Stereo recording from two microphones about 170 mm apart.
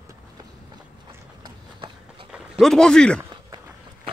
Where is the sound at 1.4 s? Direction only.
25° right (ahead or behind).